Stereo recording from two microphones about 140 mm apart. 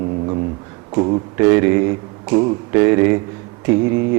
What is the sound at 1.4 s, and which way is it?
Speech, 15° right (ahead or behind).